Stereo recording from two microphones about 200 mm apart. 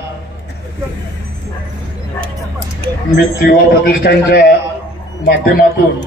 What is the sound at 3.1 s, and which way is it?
A man's voice, 50° left (ahead or behind).